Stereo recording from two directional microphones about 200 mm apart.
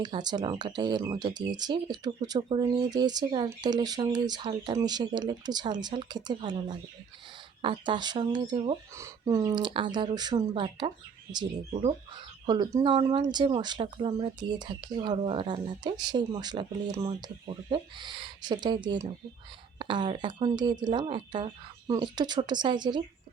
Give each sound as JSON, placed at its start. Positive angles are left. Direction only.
{"t": 0.0, "sound": "speech", "side_deg": -20}